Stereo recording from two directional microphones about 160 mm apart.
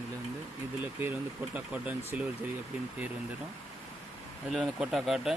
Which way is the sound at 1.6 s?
10° right (ahead or behind).